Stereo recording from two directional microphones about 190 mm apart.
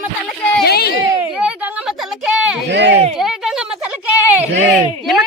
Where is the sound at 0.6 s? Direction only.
55° left (ahead or behind).